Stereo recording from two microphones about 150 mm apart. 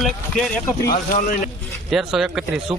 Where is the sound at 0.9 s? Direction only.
80° left.